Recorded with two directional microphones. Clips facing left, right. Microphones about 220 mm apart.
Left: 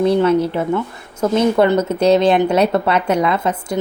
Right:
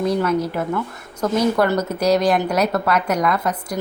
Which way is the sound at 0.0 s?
30° left (ahead or behind).